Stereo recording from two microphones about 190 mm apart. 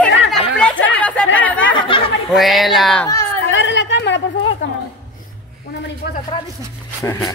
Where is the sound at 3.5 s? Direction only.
70° left (ahead or behind).